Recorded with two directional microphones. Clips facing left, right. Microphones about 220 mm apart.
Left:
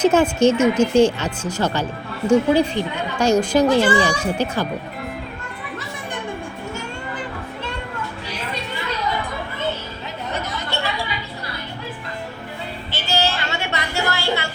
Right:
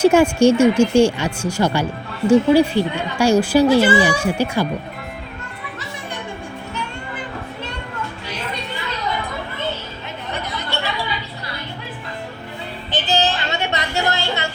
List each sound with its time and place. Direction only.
0.0 s speech: 10° right (ahead or behind)
12.9 s music: 15° right (ahead or behind)